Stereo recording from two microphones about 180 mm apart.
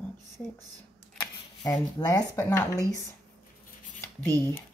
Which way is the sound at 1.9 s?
20° left (ahead or behind).